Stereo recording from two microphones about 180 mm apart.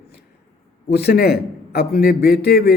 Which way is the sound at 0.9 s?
60° left (ahead or behind).